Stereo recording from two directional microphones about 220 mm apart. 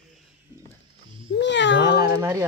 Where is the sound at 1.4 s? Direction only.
55° left (ahead or behind).